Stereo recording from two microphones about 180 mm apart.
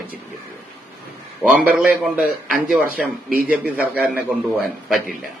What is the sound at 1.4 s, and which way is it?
Speech, 5° right (ahead or behind).